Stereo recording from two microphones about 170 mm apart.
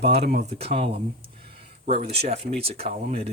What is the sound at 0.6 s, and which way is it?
Ratchet, 35° right (ahead or behind).